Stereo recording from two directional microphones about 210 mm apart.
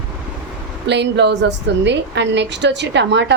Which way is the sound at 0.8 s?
55° right (ahead or behind).